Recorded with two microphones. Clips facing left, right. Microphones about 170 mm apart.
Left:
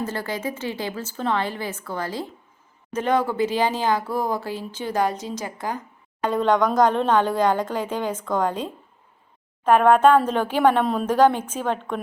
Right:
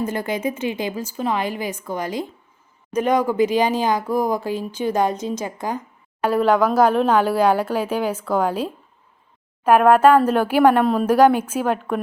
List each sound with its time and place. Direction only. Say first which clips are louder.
0.0 s speech: right 4 dB; 20° right (ahead or behind)
6.2 s speech: right 3 dB; 5° right (ahead or behind)